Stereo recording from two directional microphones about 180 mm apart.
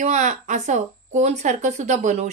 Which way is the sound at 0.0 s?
40° right (ahead or behind).